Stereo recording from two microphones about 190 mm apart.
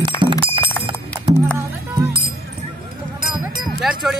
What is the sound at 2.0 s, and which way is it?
Music, 25° right (ahead or behind).